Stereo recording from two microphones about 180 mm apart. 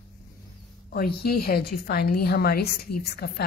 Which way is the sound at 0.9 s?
55° left (ahead or behind).